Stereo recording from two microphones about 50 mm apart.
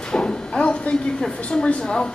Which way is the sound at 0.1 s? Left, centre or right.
Centre.